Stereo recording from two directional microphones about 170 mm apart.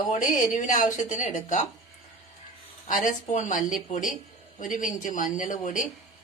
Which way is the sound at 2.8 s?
50° left (ahead or behind).